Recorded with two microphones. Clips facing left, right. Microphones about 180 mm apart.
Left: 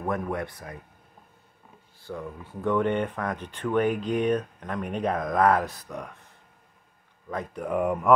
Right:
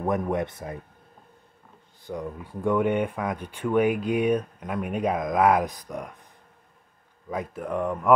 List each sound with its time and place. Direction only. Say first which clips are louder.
0.0 s speech: right 4 dB; 20° right (ahead or behind)
2.0 s speech: right 3 dB; 15° right (ahead or behind)
7.2 s speech: right 2 dB; 10° right (ahead or behind)
7.6 s speech: left 3 dB; 10° left (ahead or behind)